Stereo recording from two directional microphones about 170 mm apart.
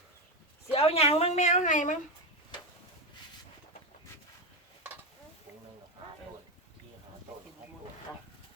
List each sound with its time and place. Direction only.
0.7 s a woman's voice: 35° left (ahead or behind)